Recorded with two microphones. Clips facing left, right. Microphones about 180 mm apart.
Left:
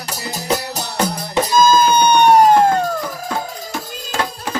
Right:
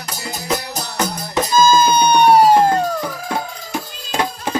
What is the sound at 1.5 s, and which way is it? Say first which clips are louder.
Music: even; 10° right (ahead or behind).